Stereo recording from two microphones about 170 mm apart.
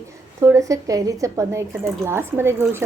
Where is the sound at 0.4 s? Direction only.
20° right (ahead or behind).